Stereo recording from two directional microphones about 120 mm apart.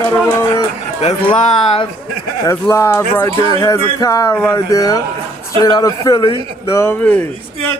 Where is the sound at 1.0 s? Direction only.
60° left (ahead or behind).